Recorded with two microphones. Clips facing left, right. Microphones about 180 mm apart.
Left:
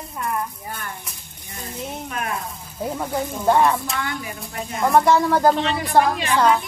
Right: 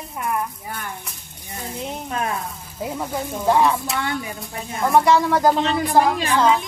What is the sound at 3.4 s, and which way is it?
A child's voice, centre (ahead or behind).